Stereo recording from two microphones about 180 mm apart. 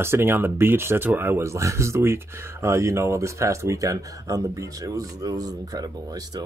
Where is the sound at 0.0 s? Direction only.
15° right (ahead or behind).